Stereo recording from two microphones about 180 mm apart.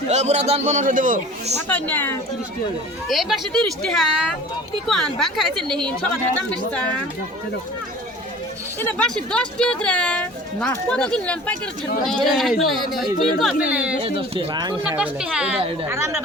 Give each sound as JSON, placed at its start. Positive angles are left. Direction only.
{"t": 0.1, "sound": "a man's voice", "side_deg": -40}
{"t": 1.6, "sound": "speech", "side_deg": 10}
{"t": 3.1, "sound": "speech", "side_deg": 0}
{"t": 8.8, "sound": "speech", "side_deg": 10}
{"t": 14.0, "sound": "speech", "side_deg": -30}
{"t": 14.8, "sound": "a woman's voice", "side_deg": -5}
{"t": 15.9, "sound": "a woman's voice", "side_deg": -15}